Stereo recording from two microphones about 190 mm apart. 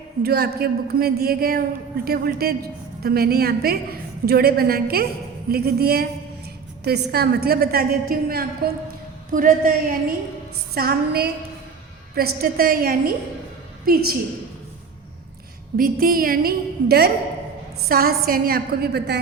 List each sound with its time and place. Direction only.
0.2 s a woman's voice: 55° right (ahead or behind)
15.8 s a woman's voice: 50° right (ahead or behind)